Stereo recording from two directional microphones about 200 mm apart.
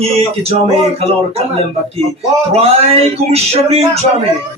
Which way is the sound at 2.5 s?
30° right (ahead or behind).